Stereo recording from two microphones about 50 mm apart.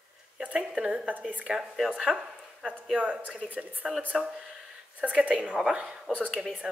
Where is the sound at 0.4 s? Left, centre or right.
Right.